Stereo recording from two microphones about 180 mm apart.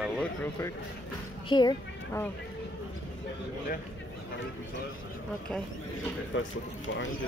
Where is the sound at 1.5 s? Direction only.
25° left (ahead or behind).